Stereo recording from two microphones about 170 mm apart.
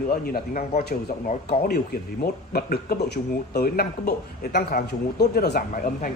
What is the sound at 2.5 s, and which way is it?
Speech, 65° left (ahead or behind).